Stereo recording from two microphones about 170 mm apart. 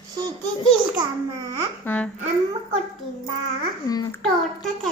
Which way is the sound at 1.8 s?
10° left (ahead or behind).